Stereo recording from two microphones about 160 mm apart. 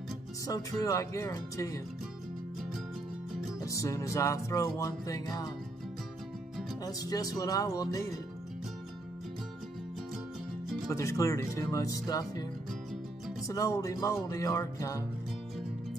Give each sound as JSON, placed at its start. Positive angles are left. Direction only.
{"t": 0.5, "sound": "music", "side_deg": 20}
{"t": 3.6, "sound": "music", "side_deg": 20}
{"t": 6.8, "sound": "music", "side_deg": 25}
{"t": 10.9, "sound": "music", "side_deg": 20}
{"t": 13.5, "sound": "music", "side_deg": 20}